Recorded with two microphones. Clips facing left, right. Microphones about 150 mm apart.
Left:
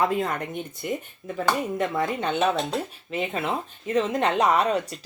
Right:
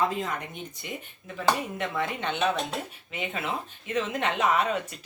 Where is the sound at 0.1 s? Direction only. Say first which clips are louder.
Left 6 dB; 55° left (ahead or behind).